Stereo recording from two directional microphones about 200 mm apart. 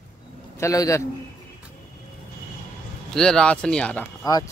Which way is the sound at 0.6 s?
15° left (ahead or behind).